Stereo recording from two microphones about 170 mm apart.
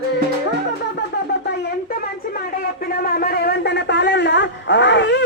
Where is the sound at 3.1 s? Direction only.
60° left (ahead or behind).